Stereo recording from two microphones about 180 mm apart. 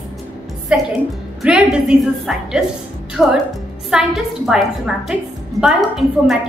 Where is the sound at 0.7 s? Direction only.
5° right (ahead or behind).